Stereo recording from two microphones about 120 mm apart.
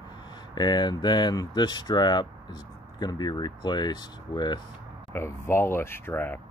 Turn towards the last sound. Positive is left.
turn(degrees=15)  # may be behind; listen again after turning